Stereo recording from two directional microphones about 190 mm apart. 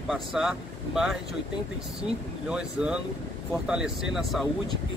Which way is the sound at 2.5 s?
5° right (ahead or behind).